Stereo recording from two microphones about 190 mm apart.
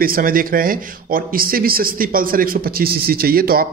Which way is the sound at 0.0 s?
50° right (ahead or behind).